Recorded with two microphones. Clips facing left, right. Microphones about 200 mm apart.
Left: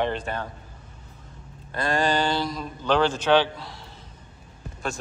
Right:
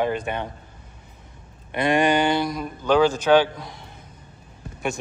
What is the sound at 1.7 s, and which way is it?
Speech, 20° right (ahead or behind).